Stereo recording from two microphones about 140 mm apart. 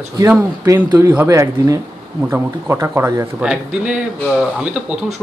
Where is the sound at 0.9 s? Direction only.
10° right (ahead or behind).